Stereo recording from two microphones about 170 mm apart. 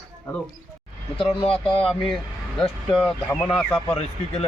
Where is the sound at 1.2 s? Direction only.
30° left (ahead or behind).